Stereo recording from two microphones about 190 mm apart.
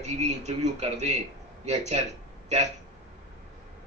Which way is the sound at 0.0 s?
35° right (ahead or behind).